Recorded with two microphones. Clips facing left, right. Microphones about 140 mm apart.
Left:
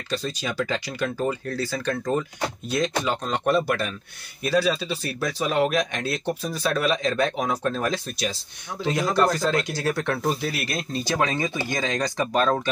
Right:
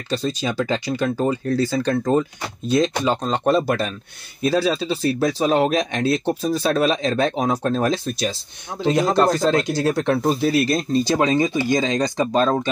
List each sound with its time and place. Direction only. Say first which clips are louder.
0.1 s speech: right 5 dB; 25° right (ahead or behind)
11.2 s speech: right 8 dB; 20° right (ahead or behind)